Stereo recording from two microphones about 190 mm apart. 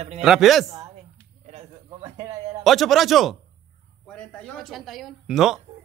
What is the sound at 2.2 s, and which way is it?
Speech, 15° right (ahead or behind).